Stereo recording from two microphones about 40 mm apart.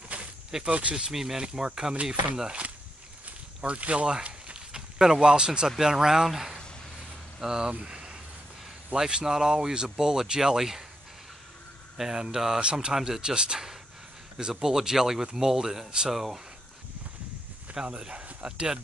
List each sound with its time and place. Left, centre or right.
0.7 s speech: right
1.1 s speech: centre
3.3 s snake: right
4.1 s a sound: right
4.6 s a sound: centre
5.7 s speech: centre
7.8 s a sound: right
8.9 s speech: centre
12.0 s speech: centre
17.8 s speech: right